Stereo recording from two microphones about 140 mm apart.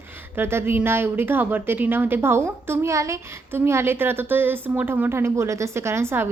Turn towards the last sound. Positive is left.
turn(degrees=-20)  # may be behind; listen again after turning